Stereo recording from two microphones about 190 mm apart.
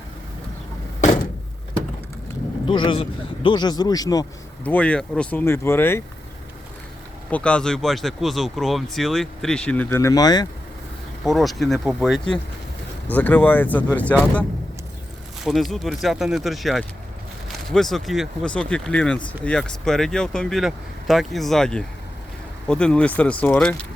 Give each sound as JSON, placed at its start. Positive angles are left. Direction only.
{"t": 2.6, "sound": "speech", "side_deg": 25}
{"t": 4.6, "sound": "speech", "side_deg": 5}
{"t": 7.3, "sound": "speech", "side_deg": 5}
{"t": 11.2, "sound": "speech", "side_deg": 0}
{"t": 15.4, "sound": "speech", "side_deg": 0}